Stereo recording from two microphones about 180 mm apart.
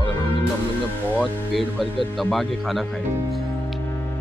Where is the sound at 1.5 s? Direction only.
Centre (ahead or behind).